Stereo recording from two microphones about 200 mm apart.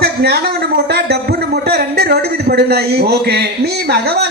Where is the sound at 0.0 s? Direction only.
50° right (ahead or behind).